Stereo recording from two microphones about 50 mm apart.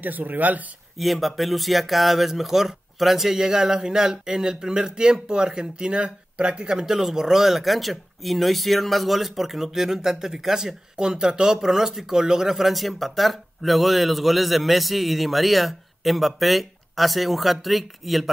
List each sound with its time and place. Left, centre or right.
0.0 s speech: right
0.9 s speech: centre